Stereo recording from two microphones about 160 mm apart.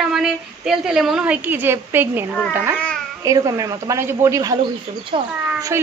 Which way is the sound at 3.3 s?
20° right (ahead or behind).